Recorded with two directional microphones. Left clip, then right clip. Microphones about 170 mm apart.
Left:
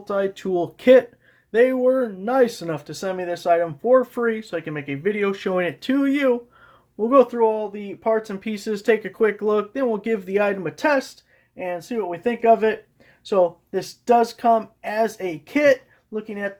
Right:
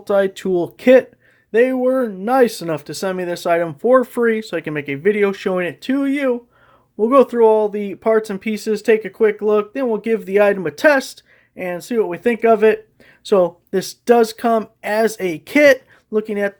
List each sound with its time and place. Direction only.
0.0 s speech: 45° right (ahead or behind); by 6.4 s 10° right (ahead or behind)
6.9 s speech: 40° right (ahead or behind); by 16.5 s 60° right (ahead or behind)